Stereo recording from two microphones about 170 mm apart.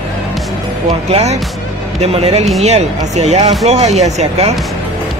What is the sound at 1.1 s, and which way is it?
Speech, 40° right (ahead or behind).